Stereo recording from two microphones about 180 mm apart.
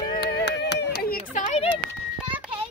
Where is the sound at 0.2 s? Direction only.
70° left (ahead or behind); by 1.7 s 40° left (ahead or behind).